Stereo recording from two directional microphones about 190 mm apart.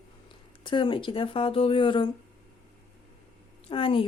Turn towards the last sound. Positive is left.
turn(degrees=30)  # may be behind; listen again after turning